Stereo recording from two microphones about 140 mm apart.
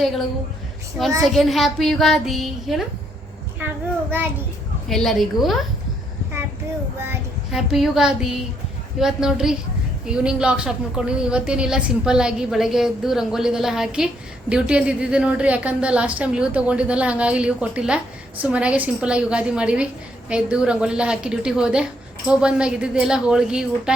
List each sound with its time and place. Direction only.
1.2 s speech: centre (ahead or behind)
4.1 s a woman's voice: 15° right (ahead or behind)
4.9 s speech: centre (ahead or behind)
7.5 s a woman's voice: 5° right (ahead or behind)